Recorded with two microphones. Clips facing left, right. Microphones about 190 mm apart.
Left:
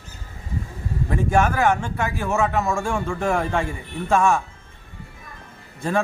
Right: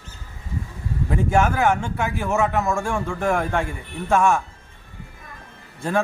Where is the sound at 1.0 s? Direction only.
5° right (ahead or behind).